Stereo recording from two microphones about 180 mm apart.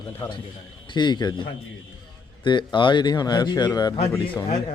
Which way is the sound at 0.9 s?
25° left (ahead or behind).